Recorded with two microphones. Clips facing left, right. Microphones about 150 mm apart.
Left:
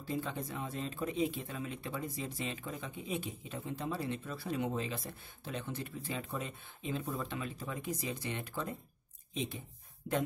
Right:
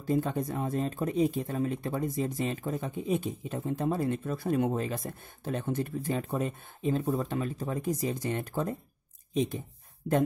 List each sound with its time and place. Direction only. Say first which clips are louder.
0.0 s speech: right 9 dB; 45° right (ahead or behind)